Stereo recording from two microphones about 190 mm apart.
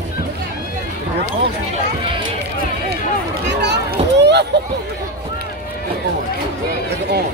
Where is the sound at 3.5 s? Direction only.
65° right (ahead or behind).